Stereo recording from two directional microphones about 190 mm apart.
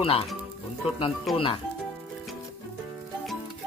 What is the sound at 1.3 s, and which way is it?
Speech, centre (ahead or behind).